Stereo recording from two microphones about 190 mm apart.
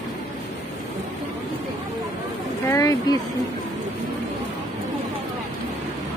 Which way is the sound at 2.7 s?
15° left (ahead or behind).